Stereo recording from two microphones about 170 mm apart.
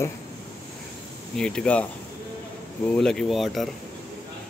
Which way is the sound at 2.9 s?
5° left (ahead or behind).